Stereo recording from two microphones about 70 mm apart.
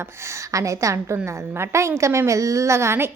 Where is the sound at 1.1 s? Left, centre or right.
Right.